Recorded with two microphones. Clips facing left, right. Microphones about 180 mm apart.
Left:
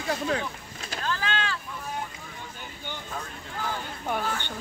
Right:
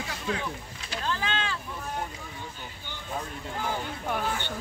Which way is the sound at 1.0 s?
25° right (ahead or behind).